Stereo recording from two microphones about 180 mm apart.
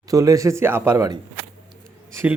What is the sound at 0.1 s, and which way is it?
A man's voice, 15° right (ahead or behind).